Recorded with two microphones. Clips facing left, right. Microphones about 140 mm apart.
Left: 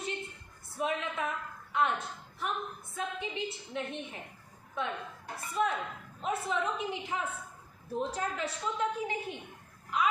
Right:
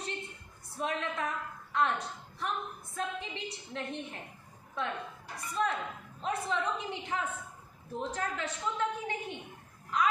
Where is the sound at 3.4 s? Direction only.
5° left (ahead or behind).